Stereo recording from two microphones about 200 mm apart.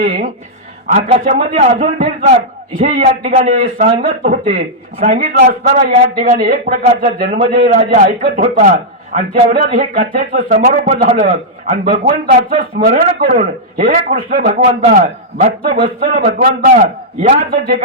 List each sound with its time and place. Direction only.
0.9 s a man's voice: 35° right (ahead or behind)